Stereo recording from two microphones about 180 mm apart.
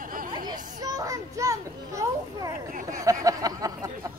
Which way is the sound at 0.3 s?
20° right (ahead or behind).